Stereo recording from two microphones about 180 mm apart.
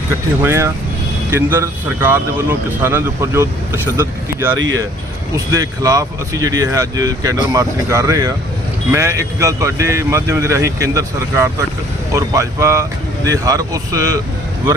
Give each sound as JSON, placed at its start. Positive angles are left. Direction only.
{"t": 0.4, "sound": "speech", "side_deg": -15}